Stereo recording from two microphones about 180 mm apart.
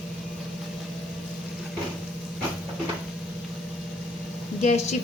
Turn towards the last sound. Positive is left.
turn(degrees=40)  # may be behind; listen again after turning